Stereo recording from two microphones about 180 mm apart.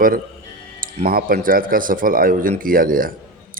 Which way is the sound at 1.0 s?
55° right (ahead or behind).